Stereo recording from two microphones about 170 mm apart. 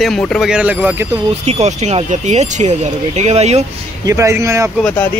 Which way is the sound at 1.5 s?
40° right (ahead or behind).